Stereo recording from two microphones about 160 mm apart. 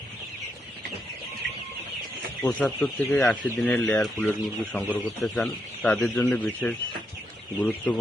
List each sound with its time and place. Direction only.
2.4 s speech: 10° left (ahead or behind)